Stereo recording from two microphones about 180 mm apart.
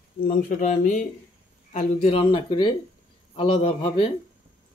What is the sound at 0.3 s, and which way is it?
Speech, 45° left (ahead or behind).